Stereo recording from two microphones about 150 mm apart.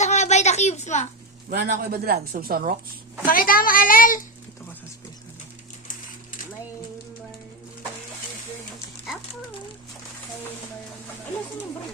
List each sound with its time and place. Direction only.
0.0 s a sound: 50° left (ahead or behind)
1.5 s speech: 90° right
3.2 s a woman's voice: 70° left (ahead or behind)